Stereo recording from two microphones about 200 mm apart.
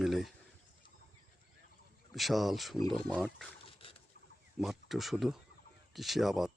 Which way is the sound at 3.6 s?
25° left (ahead or behind).